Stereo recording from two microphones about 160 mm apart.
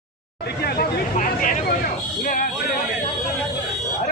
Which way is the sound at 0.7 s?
60° left (ahead or behind).